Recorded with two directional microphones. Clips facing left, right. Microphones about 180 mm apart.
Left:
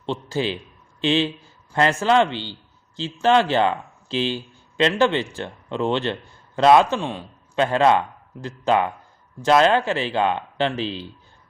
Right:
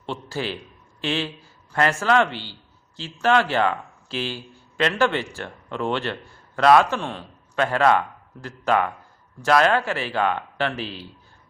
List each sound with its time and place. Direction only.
0.0 s a man's voice: 20° left (ahead or behind)